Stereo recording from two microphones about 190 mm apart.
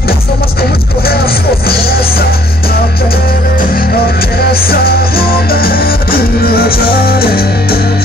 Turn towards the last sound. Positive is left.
turn(degrees=55)  # may be behind; listen again after turning